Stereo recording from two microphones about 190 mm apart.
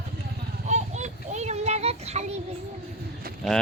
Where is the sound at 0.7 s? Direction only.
40° right (ahead or behind).